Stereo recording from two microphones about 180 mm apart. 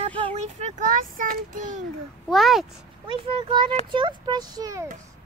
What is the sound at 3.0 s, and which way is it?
Speech, 25° right (ahead or behind).